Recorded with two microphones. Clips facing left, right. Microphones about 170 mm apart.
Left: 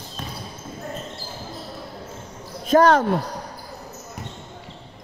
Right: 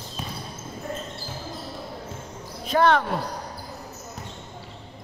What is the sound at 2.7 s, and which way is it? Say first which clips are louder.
Speech: left 5 dB; 40° left (ahead or behind).